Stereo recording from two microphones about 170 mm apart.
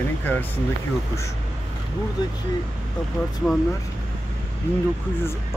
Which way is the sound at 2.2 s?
20° left (ahead or behind).